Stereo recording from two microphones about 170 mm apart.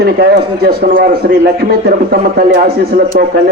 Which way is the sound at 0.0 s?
70° right (ahead or behind).